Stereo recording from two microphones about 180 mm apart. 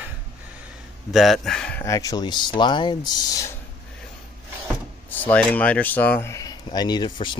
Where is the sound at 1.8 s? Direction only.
20° left (ahead or behind).